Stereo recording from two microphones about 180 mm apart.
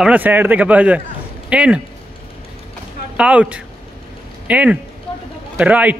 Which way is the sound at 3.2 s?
5° right (ahead or behind).